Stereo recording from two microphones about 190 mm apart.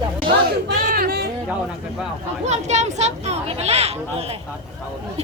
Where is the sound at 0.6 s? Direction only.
55° right (ahead or behind).